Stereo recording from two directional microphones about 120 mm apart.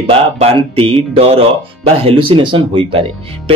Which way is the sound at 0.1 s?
55° right (ahead or behind).